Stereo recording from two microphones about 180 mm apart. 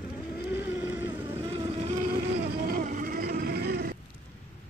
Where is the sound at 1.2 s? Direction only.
30° right (ahead or behind).